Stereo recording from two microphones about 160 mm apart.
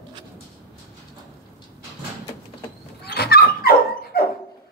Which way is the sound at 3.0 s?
80° left.